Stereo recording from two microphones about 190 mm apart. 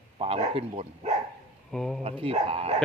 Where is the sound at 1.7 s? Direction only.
5° left (ahead or behind).